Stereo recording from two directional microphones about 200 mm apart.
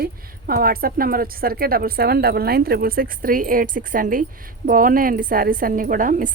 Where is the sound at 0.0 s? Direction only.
45° right (ahead or behind).